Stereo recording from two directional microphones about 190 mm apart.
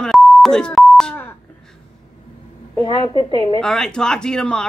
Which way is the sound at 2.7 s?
25° left (ahead or behind).